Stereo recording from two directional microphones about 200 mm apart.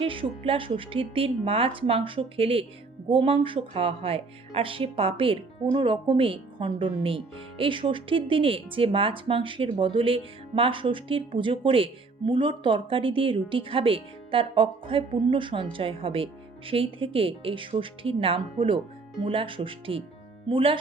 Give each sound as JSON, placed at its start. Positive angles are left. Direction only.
{"t": 0.0, "sound": "speech", "side_deg": -25}